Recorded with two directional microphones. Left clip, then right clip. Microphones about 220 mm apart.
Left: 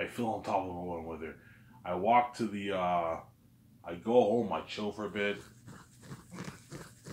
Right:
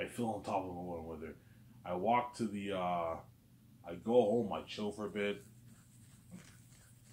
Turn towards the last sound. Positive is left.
turn(degrees=25)  # may be behind; listen again after turning